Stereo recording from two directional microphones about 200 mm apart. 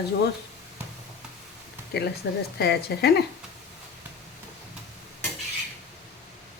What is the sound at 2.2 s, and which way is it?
Speech, 55° left (ahead or behind).